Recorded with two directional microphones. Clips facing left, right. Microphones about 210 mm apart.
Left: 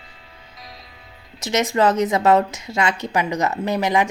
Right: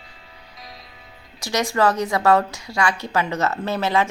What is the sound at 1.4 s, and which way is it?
A woman's voice, 20° left (ahead or behind).